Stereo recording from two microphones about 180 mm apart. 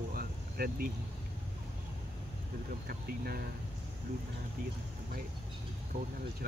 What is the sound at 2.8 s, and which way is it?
Speech, 55° right (ahead or behind).